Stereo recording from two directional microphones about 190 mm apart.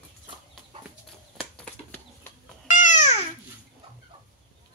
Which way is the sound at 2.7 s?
40° left (ahead or behind).